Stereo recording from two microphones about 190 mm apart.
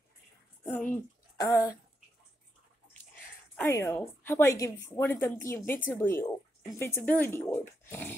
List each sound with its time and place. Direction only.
0.7 s a woman's voice: 5° left (ahead or behind)
1.4 s speech: 20° left (ahead or behind)
3.5 s a woman's voice: 15° left (ahead or behind)